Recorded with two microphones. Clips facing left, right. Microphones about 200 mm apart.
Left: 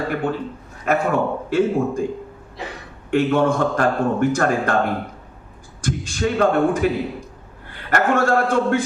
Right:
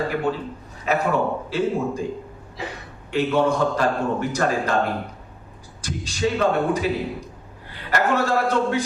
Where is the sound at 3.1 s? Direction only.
50° left (ahead or behind).